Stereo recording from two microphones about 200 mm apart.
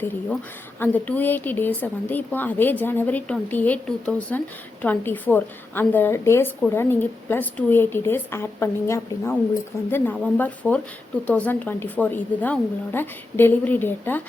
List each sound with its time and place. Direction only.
0.8 s a woman's voice: 10° left (ahead or behind)